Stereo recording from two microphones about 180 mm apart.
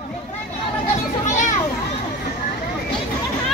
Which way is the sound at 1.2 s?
45° left (ahead or behind).